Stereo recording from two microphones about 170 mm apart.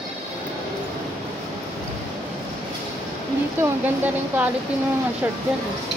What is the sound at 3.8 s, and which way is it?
Speech, 10° right (ahead or behind).